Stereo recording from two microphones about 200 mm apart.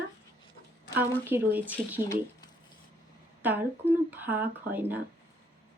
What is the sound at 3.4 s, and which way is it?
Speech, 10° right (ahead or behind).